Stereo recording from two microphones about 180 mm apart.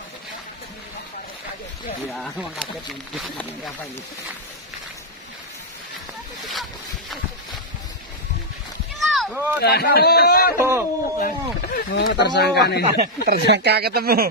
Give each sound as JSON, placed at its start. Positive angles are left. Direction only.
{"t": 2.1, "sound": "speech", "side_deg": 0}
{"t": 9.0, "sound": "rowboat", "side_deg": 0}
{"t": 9.6, "sound": "speech", "side_deg": 65}
{"t": 10.6, "sound": "speech", "side_deg": -15}
{"t": 11.1, "sound": "speech", "side_deg": 50}
{"t": 11.9, "sound": "speech", "side_deg": 70}
{"t": 13.0, "sound": "speech", "side_deg": -60}